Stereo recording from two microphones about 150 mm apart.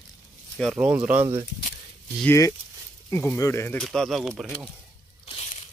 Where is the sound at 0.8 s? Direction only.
10° right (ahead or behind).